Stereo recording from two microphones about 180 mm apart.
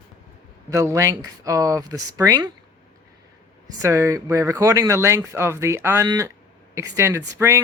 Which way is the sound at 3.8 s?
15° right (ahead or behind).